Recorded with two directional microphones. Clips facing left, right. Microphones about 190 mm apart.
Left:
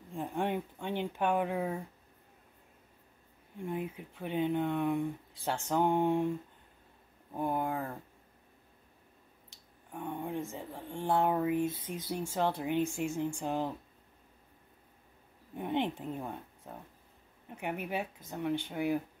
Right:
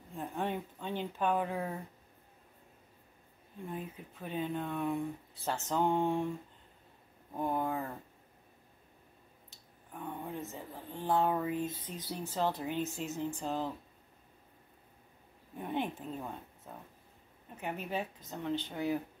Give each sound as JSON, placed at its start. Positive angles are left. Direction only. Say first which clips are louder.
{"t": 0.1, "sound": "speech", "louder": "left 3 dB", "side_deg": 15}
{"t": 3.6, "sound": "speech", "louder": "left 5 dB", "side_deg": 15}
{"t": 7.3, "sound": "speech", "louder": "left 1 dB", "side_deg": 10}
{"t": 9.9, "sound": "speech", "louder": "left 4 dB", "side_deg": 15}
{"t": 15.5, "sound": "speech", "louder": "left 3 dB", "side_deg": 20}